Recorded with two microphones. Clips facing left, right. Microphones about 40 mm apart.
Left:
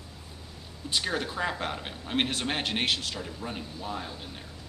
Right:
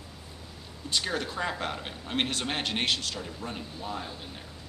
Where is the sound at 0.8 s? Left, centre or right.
Centre.